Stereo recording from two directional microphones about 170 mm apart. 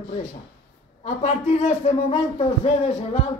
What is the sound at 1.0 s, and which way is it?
Speech, 45° left (ahead or behind).